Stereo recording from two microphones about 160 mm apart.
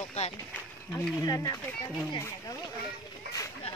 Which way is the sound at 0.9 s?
25° left (ahead or behind).